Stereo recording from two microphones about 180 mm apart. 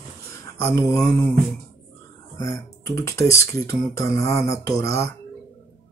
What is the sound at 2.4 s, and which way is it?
Speech, 15° left (ahead or behind).